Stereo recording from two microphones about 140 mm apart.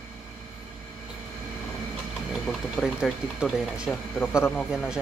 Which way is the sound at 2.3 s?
Centre (ahead or behind).